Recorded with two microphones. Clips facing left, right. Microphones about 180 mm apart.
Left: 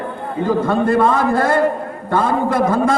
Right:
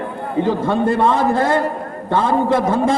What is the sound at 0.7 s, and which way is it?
A man's voice, 20° right (ahead or behind).